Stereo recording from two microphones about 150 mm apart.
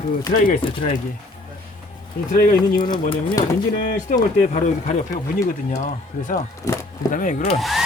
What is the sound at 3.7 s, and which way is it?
Speech, 60° left (ahead or behind).